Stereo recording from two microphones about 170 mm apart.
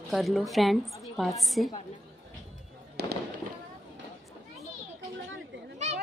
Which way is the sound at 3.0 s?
75° right (ahead or behind).